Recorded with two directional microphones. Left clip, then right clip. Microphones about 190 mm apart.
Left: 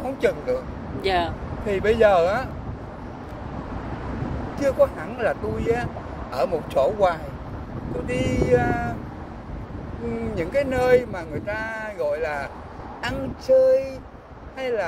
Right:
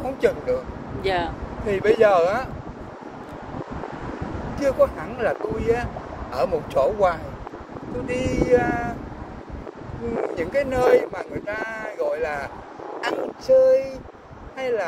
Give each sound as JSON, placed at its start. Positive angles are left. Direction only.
{"t": 0.0, "sound": "speech", "side_deg": -10}
{"t": 1.0, "sound": "speech", "side_deg": 35}
{"t": 1.7, "sound": "speech", "side_deg": -10}
{"t": 4.6, "sound": "speech", "side_deg": -10}
{"t": 10.3, "sound": "speech", "side_deg": -10}